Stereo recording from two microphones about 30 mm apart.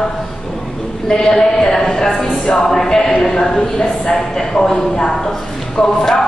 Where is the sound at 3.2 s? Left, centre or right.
Centre.